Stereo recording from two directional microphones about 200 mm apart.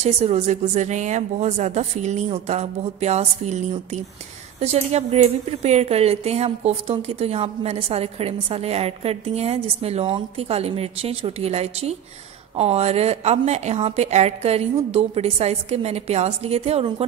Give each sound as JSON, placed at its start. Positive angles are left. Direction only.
{"t": 0.0, "sound": "a woman's voice", "side_deg": -35}